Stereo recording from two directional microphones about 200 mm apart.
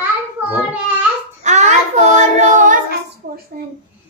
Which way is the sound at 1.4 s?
35° right (ahead or behind).